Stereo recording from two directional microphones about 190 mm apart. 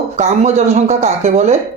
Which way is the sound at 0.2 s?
40° right (ahead or behind).